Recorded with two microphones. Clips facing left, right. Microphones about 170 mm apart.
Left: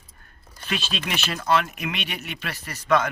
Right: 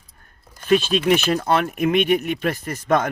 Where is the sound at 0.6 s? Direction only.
50° right (ahead or behind).